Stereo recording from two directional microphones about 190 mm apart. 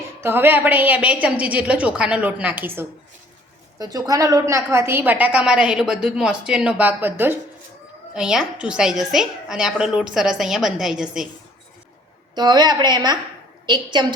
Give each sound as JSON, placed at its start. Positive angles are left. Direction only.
{"t": 0.2, "sound": "a woman's voice", "side_deg": -10}
{"t": 12.3, "sound": "a woman's voice", "side_deg": -20}